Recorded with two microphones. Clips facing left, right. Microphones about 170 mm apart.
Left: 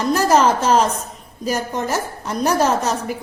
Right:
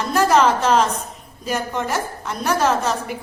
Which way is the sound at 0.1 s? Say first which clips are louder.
Even; 40° left (ahead or behind).